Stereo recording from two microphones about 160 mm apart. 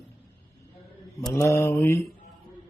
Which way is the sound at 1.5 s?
15° left (ahead or behind).